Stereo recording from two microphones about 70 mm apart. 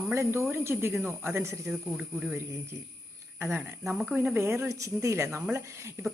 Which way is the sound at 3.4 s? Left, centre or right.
Right.